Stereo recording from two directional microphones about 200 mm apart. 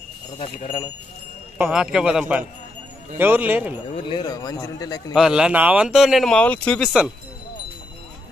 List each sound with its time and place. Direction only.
0.4 s a man's voice: 30° left (ahead or behind)
1.6 s a man's voice: 5° right (ahead or behind)
3.9 s a man's voice: 25° left (ahead or behind)
5.1 s speech: 5° right (ahead or behind)